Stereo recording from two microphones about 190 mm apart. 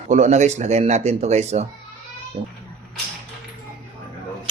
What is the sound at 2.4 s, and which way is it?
Speech, 25° right (ahead or behind).